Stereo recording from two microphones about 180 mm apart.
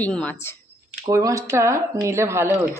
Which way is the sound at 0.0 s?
5° left (ahead or behind).